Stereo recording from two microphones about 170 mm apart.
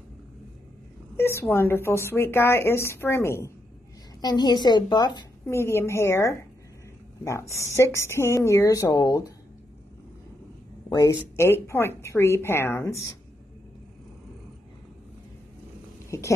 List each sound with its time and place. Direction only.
1.1 s a woman's voice: 15° left (ahead or behind)
10.9 s speech: 20° left (ahead or behind)
16.1 s speech: 20° left (ahead or behind)